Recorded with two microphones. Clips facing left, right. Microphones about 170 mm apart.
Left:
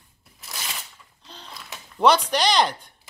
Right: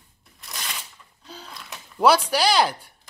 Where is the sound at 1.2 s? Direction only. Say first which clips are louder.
Right 2 dB; 5° right (ahead or behind).